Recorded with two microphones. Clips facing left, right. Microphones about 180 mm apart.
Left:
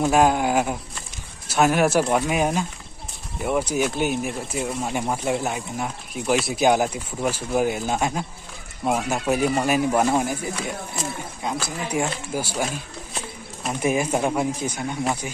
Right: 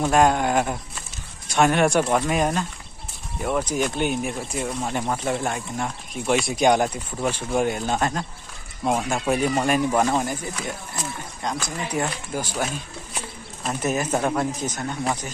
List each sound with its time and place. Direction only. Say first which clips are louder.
0.0 s speech: even; 5° left (ahead or behind)
11.4 s speech: even; 5° left (ahead or behind)